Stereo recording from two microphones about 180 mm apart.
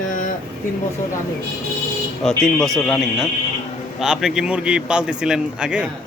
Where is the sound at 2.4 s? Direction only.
Centre (ahead or behind).